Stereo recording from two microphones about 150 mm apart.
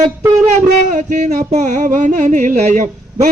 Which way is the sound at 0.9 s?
55° right (ahead or behind).